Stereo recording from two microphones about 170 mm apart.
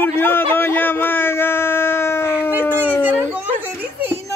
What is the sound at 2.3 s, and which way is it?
Howl, 10° right (ahead or behind).